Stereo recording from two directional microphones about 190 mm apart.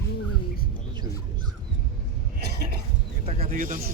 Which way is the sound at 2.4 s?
55° right (ahead or behind).